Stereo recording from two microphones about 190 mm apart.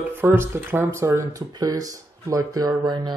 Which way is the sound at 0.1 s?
10° right (ahead or behind).